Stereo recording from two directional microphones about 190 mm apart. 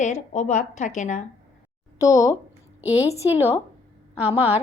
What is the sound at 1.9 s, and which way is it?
Speech, 20° left (ahead or behind).